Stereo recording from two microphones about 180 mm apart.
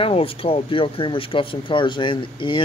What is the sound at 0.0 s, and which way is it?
Speech, 30° left (ahead or behind).